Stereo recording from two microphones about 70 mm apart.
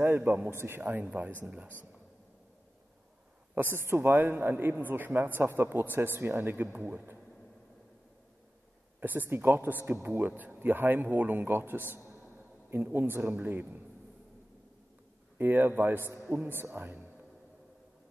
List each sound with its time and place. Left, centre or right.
0.0 s a man's voice: right
3.5 s a man's voice: right
9.0 s a man's voice: right
15.3 s a man's voice: right